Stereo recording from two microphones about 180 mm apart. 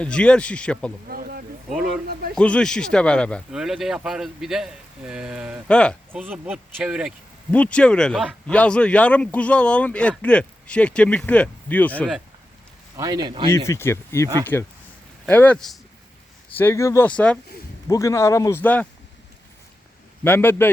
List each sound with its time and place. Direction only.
0.0 s speech: 5° left (ahead or behind)
1.0 s a sound: 55° right (ahead or behind)
2.3 s speech: 5° left (ahead or behind)
6.1 s speech: 10° right (ahead or behind)
7.5 s speech: 5° left (ahead or behind)
13.0 s speech: 20° right (ahead or behind)
13.5 s speech: 15° left (ahead or behind)
17.8 s speech: 15° left (ahead or behind)
20.2 s speech: 10° left (ahead or behind)